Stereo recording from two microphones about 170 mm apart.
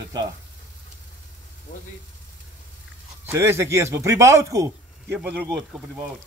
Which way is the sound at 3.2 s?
15° right (ahead or behind).